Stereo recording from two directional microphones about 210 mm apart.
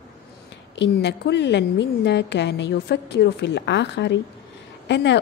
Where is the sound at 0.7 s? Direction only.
55° left (ahead or behind).